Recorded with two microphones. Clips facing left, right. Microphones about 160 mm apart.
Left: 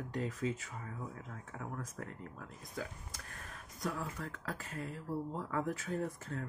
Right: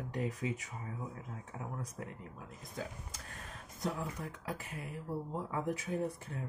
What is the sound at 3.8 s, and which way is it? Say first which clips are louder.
Speech: right 1 dB; 25° right (ahead or behind).